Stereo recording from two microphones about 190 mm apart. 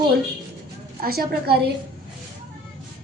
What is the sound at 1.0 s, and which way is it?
Speech, 50° right (ahead or behind).